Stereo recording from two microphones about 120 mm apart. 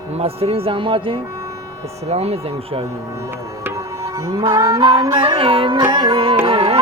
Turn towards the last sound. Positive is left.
turn(degrees=-50)  # may be behind; listen again after turning